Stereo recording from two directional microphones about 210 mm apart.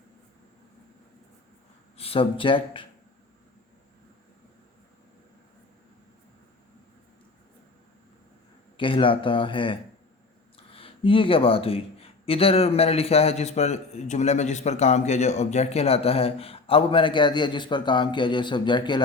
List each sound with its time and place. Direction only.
2.0 s speech: 25° left (ahead or behind)
8.8 s speech: 25° left (ahead or behind)